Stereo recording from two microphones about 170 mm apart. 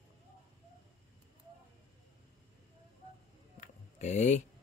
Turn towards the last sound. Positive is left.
turn(degrees=45)  # may be behind; listen again after turning